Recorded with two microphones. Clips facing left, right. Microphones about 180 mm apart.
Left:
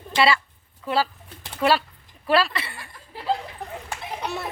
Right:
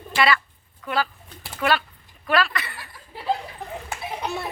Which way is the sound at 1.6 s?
30° left (ahead or behind).